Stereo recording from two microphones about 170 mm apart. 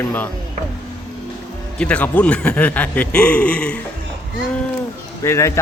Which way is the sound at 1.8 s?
10° left (ahead or behind).